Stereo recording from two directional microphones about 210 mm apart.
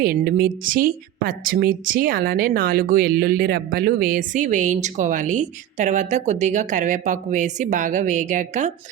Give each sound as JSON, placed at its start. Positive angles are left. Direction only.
{"t": 0.0, "sound": "a woman's voice", "side_deg": -45}